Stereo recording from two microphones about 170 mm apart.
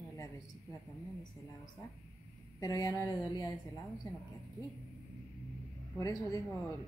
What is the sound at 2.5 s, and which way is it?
Speech, 20° left (ahead or behind).